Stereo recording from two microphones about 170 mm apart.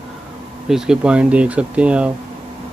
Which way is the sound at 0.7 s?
5° right (ahead or behind).